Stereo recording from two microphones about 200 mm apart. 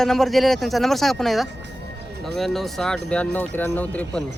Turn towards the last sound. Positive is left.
turn(degrees=10)  # may be behind; listen again after turning